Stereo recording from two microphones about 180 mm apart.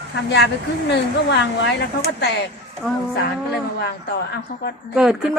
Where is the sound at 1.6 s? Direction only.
65° left (ahead or behind).